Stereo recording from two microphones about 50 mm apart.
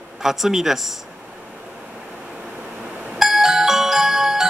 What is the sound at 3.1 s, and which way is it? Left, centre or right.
Music, centre.